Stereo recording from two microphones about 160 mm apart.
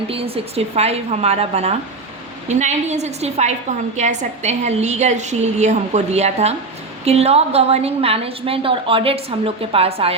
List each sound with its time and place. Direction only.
0.1 s a woman's voice: 40° right (ahead or behind)